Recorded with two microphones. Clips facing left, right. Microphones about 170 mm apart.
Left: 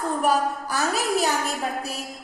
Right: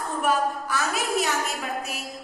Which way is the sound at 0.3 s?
35° left (ahead or behind).